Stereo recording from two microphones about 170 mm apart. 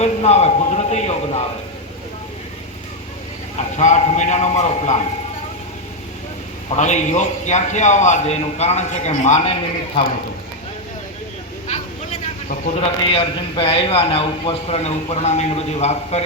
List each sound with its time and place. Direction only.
0.0 s a man's voice: 40° left (ahead or behind)
3.6 s a man's voice: 45° left (ahead or behind)
6.7 s a man's voice: 45° left (ahead or behind)
13.0 s a man's voice: 35° left (ahead or behind)